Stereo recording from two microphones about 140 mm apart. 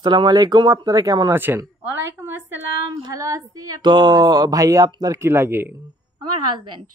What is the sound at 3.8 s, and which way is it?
Speech, 35° right (ahead or behind).